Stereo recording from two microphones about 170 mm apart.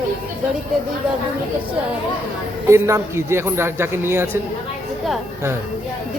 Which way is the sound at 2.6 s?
15° right (ahead or behind).